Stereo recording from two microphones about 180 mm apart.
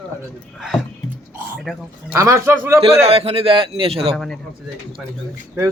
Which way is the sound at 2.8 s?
35° right (ahead or behind).